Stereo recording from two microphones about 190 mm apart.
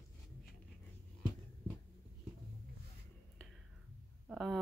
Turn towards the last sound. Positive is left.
turn(degrees=0)  # may be behind; listen again after turning